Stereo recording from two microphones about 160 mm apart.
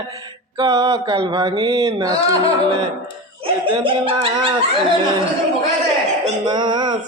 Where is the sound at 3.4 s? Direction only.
35° right (ahead or behind).